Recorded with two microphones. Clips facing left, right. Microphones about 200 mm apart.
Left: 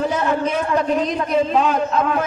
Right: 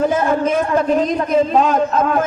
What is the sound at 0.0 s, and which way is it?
A man's voice, 45° right (ahead or behind).